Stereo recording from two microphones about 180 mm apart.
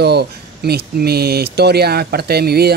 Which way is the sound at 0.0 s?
65° right (ahead or behind).